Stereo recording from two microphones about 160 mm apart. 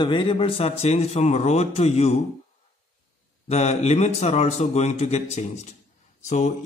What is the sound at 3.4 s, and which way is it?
A man's voice, 40° left (ahead or behind).